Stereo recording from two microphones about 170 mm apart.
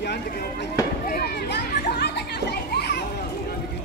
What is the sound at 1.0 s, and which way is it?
Children playing, 60° left (ahead or behind).